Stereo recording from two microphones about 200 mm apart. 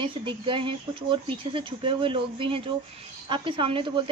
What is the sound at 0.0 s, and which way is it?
Speech, 25° right (ahead or behind).